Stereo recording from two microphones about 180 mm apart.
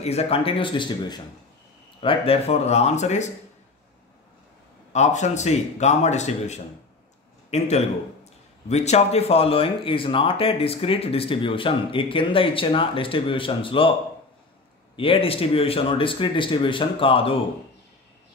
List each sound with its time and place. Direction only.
0.0 s speech: 35° left (ahead or behind)
4.9 s speech: 40° left (ahead or behind)
15.0 s speech: 30° left (ahead or behind)